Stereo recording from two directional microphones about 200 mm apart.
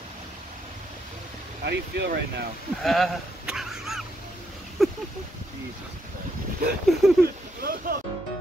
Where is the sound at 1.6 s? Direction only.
55° right (ahead or behind).